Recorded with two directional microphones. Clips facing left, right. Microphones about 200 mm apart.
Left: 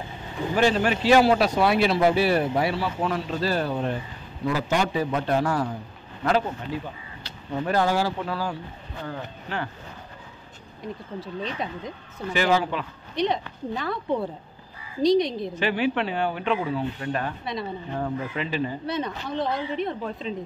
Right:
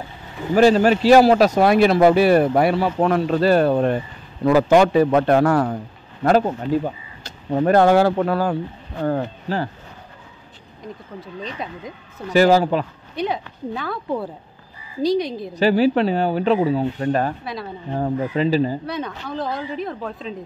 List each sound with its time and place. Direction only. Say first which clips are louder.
0.6 s a man's voice: right 8 dB; 40° right (ahead or behind); by 5.8 s 60° right (ahead or behind)
6.2 s speech: right 7 dB; 45° right (ahead or behind)
9.5 s speech: right 7 dB; 35° right (ahead or behind)
10.8 s a man's voice: left 1 dB; centre (ahead or behind)
12.3 s speech: right 8 dB; 40° right (ahead or behind)
13.1 s a man's voice: even; 5° right (ahead or behind)
15.5 s speech: right 10 dB; 35° right (ahead or behind)
18.9 s a man's voice: right 1 dB; centre (ahead or behind)